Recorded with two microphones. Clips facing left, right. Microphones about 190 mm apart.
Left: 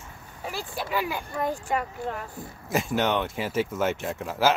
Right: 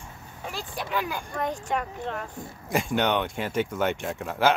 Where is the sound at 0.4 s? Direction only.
5° left (ahead or behind).